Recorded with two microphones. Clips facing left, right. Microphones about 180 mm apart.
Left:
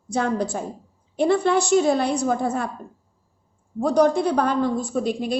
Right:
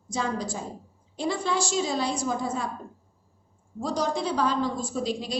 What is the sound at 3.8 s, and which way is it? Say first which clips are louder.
A woman's voice: left 9 dB; 60° left (ahead or behind).